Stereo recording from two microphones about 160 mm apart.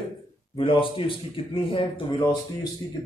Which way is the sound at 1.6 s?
30° left (ahead or behind).